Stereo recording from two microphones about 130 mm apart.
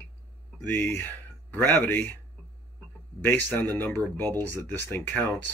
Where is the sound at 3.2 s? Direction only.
15° left (ahead or behind).